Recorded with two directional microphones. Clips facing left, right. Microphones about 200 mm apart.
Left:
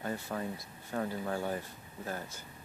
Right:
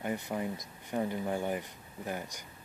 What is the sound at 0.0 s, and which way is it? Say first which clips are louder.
Speech: right 2 dB; 15° right (ahead or behind).